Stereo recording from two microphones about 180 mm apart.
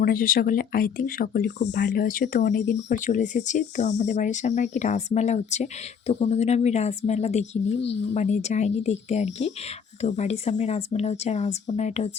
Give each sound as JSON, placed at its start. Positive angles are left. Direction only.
{"t": 0.0, "sound": "speech", "side_deg": 50}
{"t": 1.9, "sound": "speech", "side_deg": 50}
{"t": 7.8, "sound": "speech", "side_deg": 75}
{"t": 8.1, "sound": "speech", "side_deg": 40}